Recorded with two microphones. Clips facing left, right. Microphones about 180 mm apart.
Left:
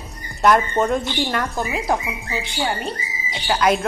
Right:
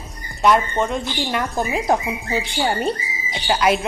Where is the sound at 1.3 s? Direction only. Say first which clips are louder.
Right 1 dB; 15° right (ahead or behind).